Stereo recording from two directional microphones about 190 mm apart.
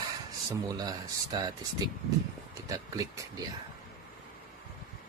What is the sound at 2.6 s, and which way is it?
Speech, 15° right (ahead or behind).